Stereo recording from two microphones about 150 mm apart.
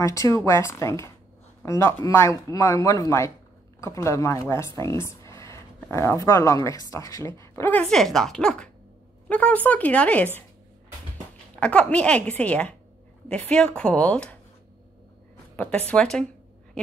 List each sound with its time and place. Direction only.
0.0 s speech: 20° left (ahead or behind)
7.8 s a woman's voice: 5° left (ahead or behind)
11.6 s a woman's voice: 10° left (ahead or behind)
15.5 s a woman's voice: 10° left (ahead or behind)
16.8 s owl: 5° left (ahead or behind)